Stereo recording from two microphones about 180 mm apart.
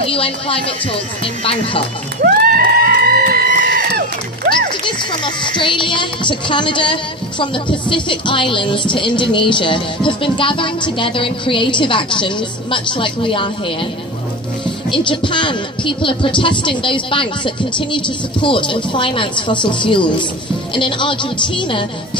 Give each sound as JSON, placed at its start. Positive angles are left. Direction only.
{"t": 0.0, "sound": "speech", "side_deg": 30}
{"t": 2.2, "sound": "a sound", "side_deg": -55}
{"t": 4.8, "sound": "speech", "side_deg": 25}
{"t": 14.9, "sound": "speech", "side_deg": 25}